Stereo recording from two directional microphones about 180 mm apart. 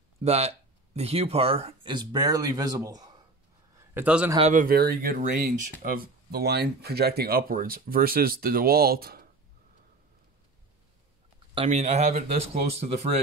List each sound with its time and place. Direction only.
0.2 s speech: 35° right (ahead or behind); by 3.2 s 20° right (ahead or behind)
3.9 s a man's voice: 10° right (ahead or behind)
4.4 s speech: 45° right (ahead or behind)
11.5 s speech: 35° right (ahead or behind)